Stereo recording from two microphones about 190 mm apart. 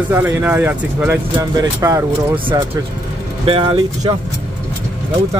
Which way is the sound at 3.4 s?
30° right (ahead or behind).